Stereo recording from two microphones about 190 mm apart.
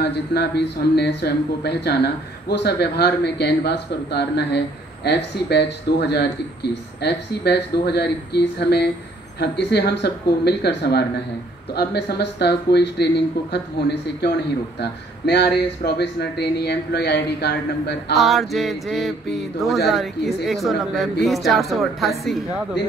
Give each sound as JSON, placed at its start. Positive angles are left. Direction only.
{"t": 0.0, "sound": "speech", "side_deg": 60}
{"t": 18.1, "sound": "a woman's voice", "side_deg": 0}